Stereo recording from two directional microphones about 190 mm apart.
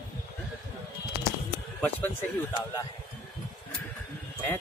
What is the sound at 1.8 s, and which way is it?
Speech, 10° left (ahead or behind).